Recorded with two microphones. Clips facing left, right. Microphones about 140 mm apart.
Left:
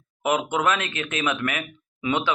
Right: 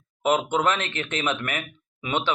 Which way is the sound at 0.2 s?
25° right (ahead or behind).